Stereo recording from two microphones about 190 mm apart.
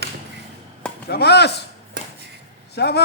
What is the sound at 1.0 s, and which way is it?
Speech, 60° left (ahead or behind).